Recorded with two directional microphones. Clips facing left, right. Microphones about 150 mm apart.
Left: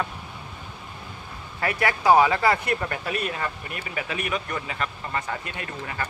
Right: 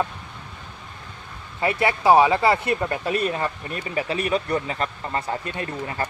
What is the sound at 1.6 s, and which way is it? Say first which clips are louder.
Speech: right 2 dB; 25° right (ahead or behind).